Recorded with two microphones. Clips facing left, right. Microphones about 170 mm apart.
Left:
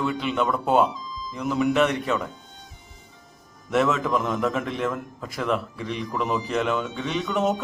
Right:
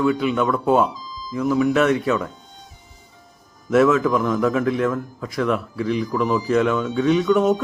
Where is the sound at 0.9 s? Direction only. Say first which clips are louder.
Even; 35° right (ahead or behind).